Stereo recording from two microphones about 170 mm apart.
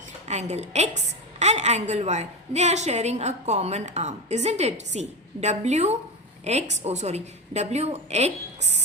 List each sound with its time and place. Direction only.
0.3 s a woman's voice: 40° right (ahead or behind)